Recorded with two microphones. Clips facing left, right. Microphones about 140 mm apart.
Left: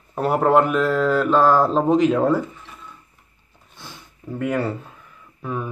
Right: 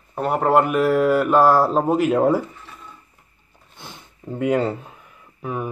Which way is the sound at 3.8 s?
20° right (ahead or behind).